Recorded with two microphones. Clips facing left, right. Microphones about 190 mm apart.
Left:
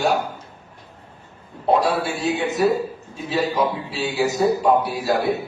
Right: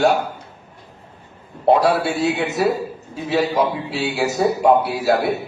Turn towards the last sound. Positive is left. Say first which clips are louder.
# right 3 dB
turn(degrees=-65)  # may be behind; listen again after turning